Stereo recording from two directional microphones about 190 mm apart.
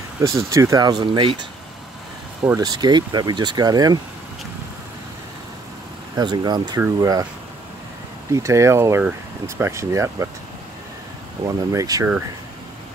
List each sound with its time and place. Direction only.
0.3 s speech: 15° right (ahead or behind)
6.1 s speech: 20° right (ahead or behind)
8.3 s speech: 15° right (ahead or behind)
11.4 s speech: 20° right (ahead or behind)